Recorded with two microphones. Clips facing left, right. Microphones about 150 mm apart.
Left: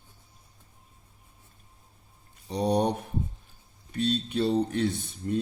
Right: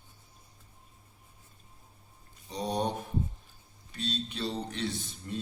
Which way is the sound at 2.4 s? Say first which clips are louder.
Left 6 dB; 60° left (ahead or behind).